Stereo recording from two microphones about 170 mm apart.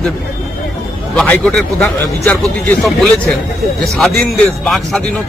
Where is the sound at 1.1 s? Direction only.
5° left (ahead or behind).